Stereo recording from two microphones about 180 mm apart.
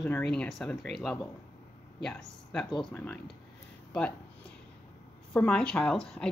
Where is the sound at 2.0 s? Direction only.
5° left (ahead or behind).